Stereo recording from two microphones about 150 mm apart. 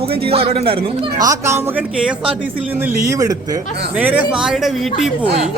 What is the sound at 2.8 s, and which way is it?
Speech, 20° right (ahead or behind).